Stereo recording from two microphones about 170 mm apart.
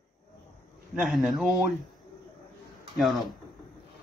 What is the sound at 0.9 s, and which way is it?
Speech, centre (ahead or behind).